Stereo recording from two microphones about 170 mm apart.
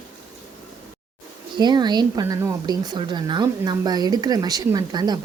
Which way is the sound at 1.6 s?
25° right (ahead or behind).